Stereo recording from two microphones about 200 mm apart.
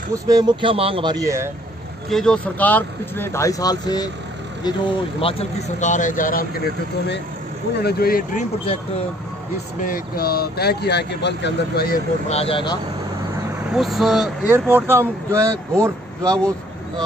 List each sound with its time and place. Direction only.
0.1 s speech: 20° right (ahead or behind)
2.0 s speech: 5° left (ahead or behind); by 9.0 s 35° left (ahead or behind)
9.8 s speech: 45° left (ahead or behind)
12.3 s speech: 30° left (ahead or behind)
13.7 s speech: centre (ahead or behind)